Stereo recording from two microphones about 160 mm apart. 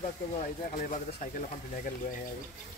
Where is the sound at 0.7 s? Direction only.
50° left (ahead or behind).